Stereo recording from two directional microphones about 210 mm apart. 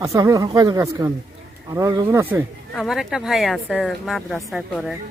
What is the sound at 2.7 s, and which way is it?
Speech, centre (ahead or behind).